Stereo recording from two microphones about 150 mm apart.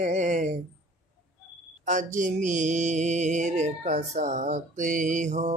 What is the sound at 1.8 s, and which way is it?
Mantra, 55° right (ahead or behind).